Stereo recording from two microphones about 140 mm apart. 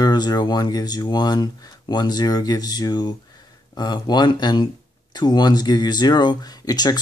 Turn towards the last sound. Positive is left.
turn(degrees=30)  # may be behind; listen again after turning